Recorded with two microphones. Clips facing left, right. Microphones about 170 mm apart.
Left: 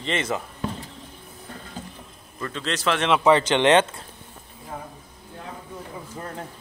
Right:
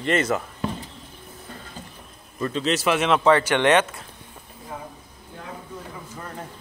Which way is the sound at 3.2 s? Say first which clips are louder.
Left 1 dB; 20° left (ahead or behind).